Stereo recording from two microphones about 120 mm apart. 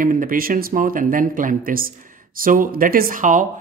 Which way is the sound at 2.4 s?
90° right.